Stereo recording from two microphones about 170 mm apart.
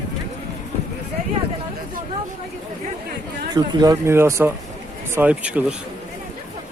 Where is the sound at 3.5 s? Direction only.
20° right (ahead or behind).